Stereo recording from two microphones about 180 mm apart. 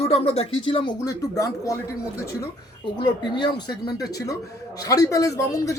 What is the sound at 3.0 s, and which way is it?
Speech, 25° left (ahead or behind).